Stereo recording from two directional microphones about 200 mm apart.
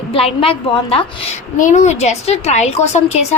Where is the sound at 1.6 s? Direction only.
40° left (ahead or behind).